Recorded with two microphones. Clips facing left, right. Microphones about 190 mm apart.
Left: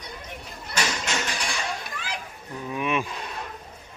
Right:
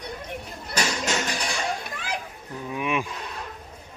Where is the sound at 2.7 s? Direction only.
15° right (ahead or behind).